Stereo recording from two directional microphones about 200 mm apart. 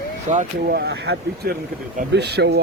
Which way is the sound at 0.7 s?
60° right (ahead or behind).